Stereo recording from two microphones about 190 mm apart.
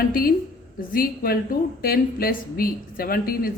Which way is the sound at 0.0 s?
50° left (ahead or behind).